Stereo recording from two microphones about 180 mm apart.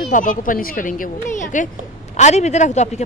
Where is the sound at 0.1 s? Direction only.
45° left (ahead or behind).